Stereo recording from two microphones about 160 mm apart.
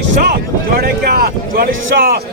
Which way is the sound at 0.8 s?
75° right (ahead or behind).